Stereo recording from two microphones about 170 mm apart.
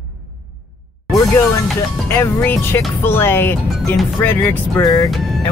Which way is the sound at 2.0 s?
15° left (ahead or behind).